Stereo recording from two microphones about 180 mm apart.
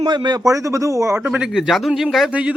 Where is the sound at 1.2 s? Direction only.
5° right (ahead or behind).